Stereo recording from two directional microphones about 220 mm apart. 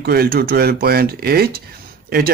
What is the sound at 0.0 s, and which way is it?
Speech, 45° right (ahead or behind).